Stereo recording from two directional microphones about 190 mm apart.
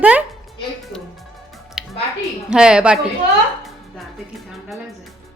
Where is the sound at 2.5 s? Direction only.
5° right (ahead or behind).